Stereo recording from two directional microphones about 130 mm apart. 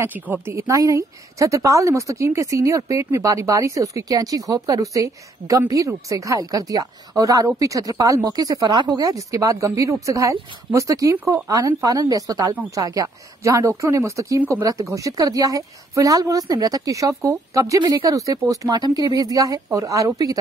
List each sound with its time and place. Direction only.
0.0 s a woman's voice: 15° right (ahead or behind)